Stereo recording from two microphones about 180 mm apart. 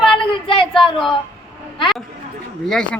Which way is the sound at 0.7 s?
Centre (ahead or behind).